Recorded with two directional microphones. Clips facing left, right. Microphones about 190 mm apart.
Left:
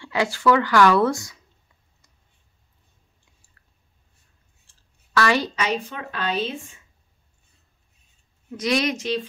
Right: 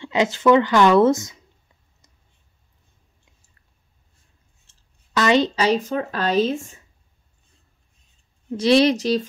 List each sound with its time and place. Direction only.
0.0 s speech: 20° right (ahead or behind)
4.6 s a sound: 20° right (ahead or behind)
5.6 s a woman's voice: 35° right (ahead or behind)
8.5 s a woman's voice: 30° right (ahead or behind)